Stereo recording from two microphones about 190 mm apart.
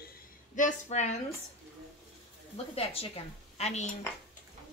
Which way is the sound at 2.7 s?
30° left (ahead or behind).